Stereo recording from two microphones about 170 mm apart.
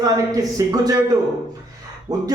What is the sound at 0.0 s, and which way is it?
Speech, 20° right (ahead or behind).